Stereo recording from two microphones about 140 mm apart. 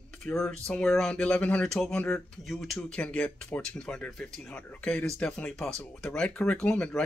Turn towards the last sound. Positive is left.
turn(degrees=5)  # may be behind; listen again after turning